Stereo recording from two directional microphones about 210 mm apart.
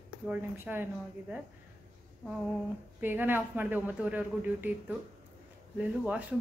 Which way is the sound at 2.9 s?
10° right (ahead or behind).